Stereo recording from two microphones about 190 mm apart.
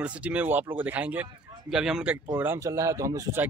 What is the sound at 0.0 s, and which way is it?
Speech, 5° right (ahead or behind).